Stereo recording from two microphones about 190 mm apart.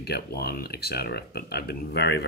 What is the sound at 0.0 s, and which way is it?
Speech, 55° left (ahead or behind).